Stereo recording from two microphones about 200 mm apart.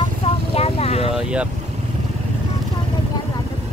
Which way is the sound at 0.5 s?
30° left (ahead or behind).